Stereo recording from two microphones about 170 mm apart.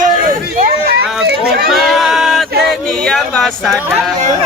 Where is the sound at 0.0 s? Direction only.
50° right (ahead or behind); by 1.7 s 70° right (ahead or behind).